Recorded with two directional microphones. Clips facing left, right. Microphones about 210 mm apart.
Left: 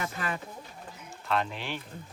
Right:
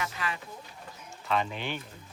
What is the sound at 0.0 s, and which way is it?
Speech, 45° left (ahead or behind).